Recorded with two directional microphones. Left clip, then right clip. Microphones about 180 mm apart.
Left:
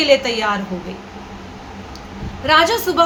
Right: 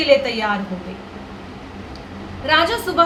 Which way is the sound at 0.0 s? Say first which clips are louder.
Left 1 dB; 30° left (ahead or behind).